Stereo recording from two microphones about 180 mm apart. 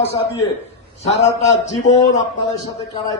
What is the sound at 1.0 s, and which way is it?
Speech, 40° left (ahead or behind).